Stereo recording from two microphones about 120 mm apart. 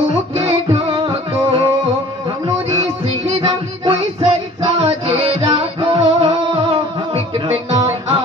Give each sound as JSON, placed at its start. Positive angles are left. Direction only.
{"t": 0.3, "sound": "music", "side_deg": -55}
{"t": 7.3, "sound": "music", "side_deg": -55}